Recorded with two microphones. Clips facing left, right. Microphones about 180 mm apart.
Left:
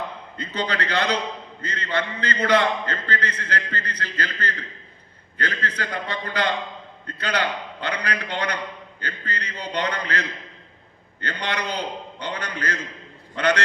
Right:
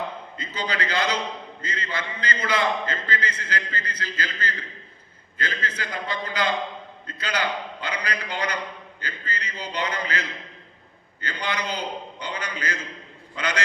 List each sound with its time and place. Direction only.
0.3 s a man's voice: 60° left (ahead or behind)